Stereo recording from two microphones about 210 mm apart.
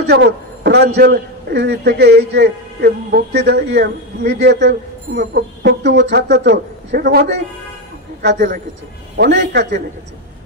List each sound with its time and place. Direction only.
0.0 s a man's voice: 50° right (ahead or behind)
9.1 s a man's voice: 55° right (ahead or behind)